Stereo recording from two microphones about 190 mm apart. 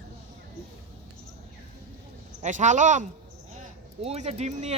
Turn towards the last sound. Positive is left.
turn(degrees=-35)  # may be behind; listen again after turning